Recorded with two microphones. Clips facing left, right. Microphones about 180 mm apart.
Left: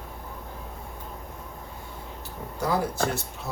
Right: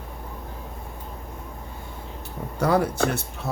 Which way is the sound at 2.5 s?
70° right (ahead or behind).